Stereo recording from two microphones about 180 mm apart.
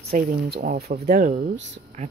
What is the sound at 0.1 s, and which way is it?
Speech, 60° right (ahead or behind).